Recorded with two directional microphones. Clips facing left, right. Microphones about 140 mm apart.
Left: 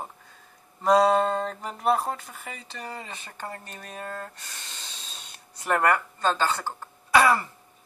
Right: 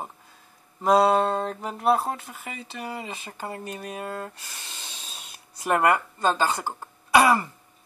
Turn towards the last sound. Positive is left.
turn(degrees=-15)  # may be behind; listen again after turning